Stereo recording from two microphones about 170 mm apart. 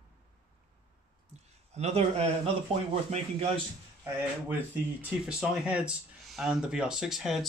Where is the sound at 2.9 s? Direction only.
35° right (ahead or behind).